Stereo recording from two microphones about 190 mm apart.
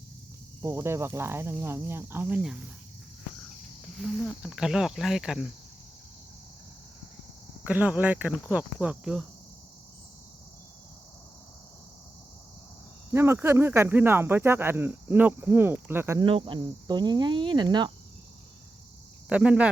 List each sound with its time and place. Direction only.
0.6 s speech: 15° right (ahead or behind)
4.0 s speech: centre (ahead or behind)
7.6 s speech: 10° right (ahead or behind)
13.1 s speech: 15° right (ahead or behind)
16.2 s cricket: 25° right (ahead or behind)
19.3 s speech: 5° right (ahead or behind)